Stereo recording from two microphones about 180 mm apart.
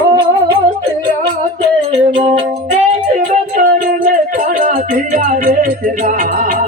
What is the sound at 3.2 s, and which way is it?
Music, 50° right (ahead or behind).